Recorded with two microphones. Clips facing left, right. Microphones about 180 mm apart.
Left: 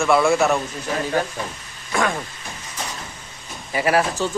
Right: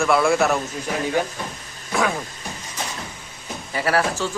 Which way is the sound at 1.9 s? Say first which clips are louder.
Even; 5° right (ahead or behind).